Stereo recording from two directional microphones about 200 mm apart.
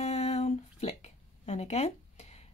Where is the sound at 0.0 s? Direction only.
30° left (ahead or behind).